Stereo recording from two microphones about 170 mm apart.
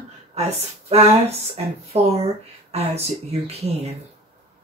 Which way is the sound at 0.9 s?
40° right (ahead or behind).